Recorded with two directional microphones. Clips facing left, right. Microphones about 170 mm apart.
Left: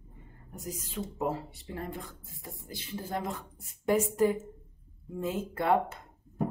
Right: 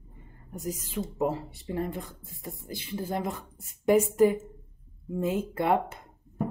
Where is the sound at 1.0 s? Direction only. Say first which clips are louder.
Right 3 dB; 15° right (ahead or behind).